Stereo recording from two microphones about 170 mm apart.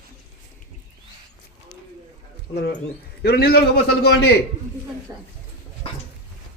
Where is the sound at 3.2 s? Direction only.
65° left (ahead or behind).